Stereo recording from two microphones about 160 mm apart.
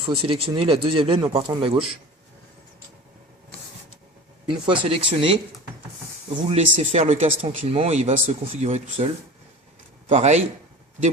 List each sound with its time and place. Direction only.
0.1 s a man's voice: 35° right (ahead or behind)
4.4 s speech: 30° right (ahead or behind)
6.5 s speech: 40° right (ahead or behind)
10.1 s speech: 45° right (ahead or behind)